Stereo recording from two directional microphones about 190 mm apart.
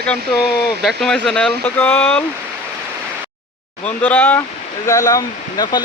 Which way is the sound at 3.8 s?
10° left (ahead or behind).